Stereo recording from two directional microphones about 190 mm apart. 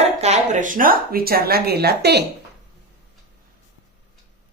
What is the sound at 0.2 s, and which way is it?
Speech, 40° right (ahead or behind).